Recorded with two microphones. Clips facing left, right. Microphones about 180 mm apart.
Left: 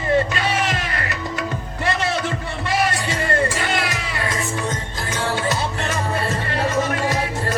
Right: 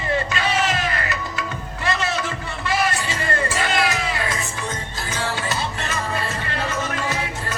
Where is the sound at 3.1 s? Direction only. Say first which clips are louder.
Left 3 dB; 55° left (ahead or behind).